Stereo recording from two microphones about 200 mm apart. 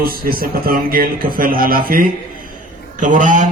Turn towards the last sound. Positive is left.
turn(degrees=-40)  # may be behind; listen again after turning